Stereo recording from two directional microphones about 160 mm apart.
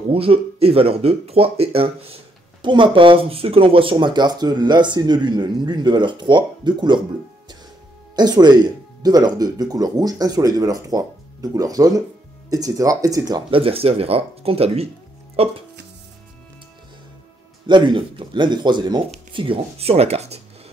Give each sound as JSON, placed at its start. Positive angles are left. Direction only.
{"t": 0.1, "sound": "speech", "side_deg": -35}
{"t": 8.2, "sound": "speech", "side_deg": -25}
{"t": 17.6, "sound": "speech", "side_deg": -30}